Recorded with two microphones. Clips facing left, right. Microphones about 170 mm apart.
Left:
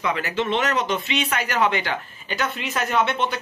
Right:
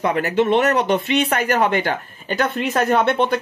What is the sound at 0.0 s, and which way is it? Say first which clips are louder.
Speech: right 6 dB; 50° right (ahead or behind).